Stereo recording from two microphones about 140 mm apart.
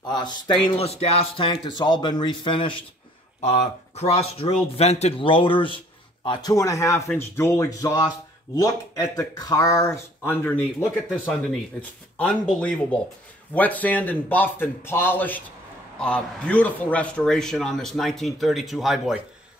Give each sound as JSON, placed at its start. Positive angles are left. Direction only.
{"t": 0.0, "sound": "speech", "side_deg": 30}
{"t": 3.3, "sound": "speech", "side_deg": 55}
{"t": 10.2, "sound": "a man's voice", "side_deg": 15}